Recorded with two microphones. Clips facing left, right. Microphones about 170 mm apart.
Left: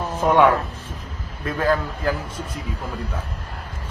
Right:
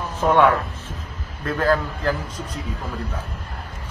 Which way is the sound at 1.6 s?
10° left (ahead or behind).